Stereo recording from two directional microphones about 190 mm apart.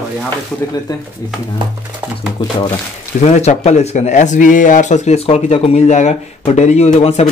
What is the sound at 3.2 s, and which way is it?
Speech, 35° left (ahead or behind).